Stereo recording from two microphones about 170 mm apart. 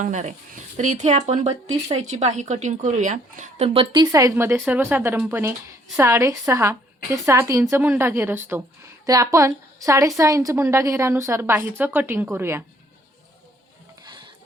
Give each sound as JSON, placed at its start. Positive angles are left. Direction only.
{"t": 0.0, "sound": "a woman's voice", "side_deg": -45}
{"t": 14.0, "sound": "music", "side_deg": -25}